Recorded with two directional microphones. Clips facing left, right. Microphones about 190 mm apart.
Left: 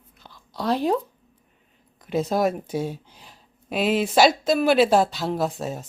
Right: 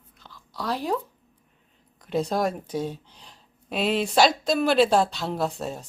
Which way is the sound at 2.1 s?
5° left (ahead or behind).